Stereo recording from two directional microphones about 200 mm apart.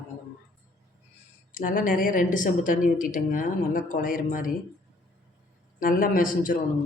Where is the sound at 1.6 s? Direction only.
45° left (ahead or behind).